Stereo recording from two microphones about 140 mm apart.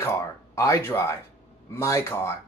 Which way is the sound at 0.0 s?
20° left (ahead or behind).